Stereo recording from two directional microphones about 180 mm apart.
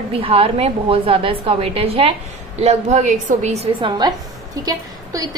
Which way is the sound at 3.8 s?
25° right (ahead or behind).